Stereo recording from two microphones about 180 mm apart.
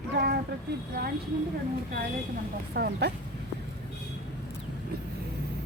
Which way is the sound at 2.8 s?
60° right (ahead or behind).